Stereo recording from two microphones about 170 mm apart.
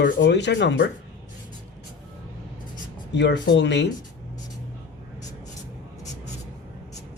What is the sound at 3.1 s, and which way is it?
Speech, 90° left.